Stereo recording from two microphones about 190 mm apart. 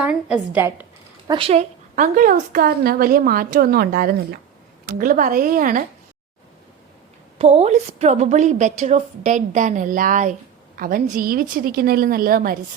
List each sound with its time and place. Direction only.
0.0 s a woman's voice: 5° right (ahead or behind)
1.3 s speech: 30° right (ahead or behind)
2.0 s a woman's voice: 45° right (ahead or behind)
7.3 s a woman's voice: 30° right (ahead or behind); by 12.5 s 50° right (ahead or behind)